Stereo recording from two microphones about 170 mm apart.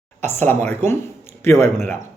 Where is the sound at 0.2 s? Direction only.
10° left (ahead or behind).